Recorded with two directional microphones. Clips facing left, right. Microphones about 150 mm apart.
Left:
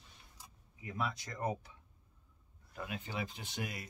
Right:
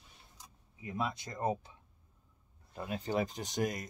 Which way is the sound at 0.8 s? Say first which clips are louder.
Right 2 dB; 20° right (ahead or behind).